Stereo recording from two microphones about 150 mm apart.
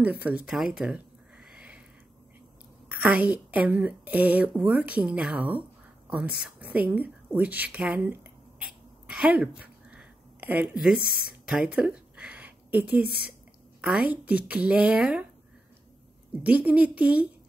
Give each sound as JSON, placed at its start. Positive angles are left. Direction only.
{"t": 0.0, "sound": "a woman's voice", "side_deg": -10}
{"t": 1.5, "sound": "a sound", "side_deg": -5}
{"t": 2.9, "sound": "a woman's voice", "side_deg": -10}
{"t": 6.7, "sound": "a sound", "side_deg": -10}
{"t": 11.0, "sound": "speech", "side_deg": 90}
{"t": 11.4, "sound": "a sound", "side_deg": -5}
{"t": 13.0, "sound": "speech", "side_deg": 90}
{"t": 13.7, "sound": "a woman's voice", "side_deg": -10}
{"t": 16.4, "sound": "a woman's voice", "side_deg": -10}